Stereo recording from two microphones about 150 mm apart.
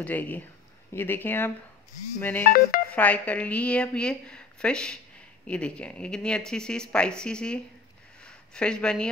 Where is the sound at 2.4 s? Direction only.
70° left (ahead or behind).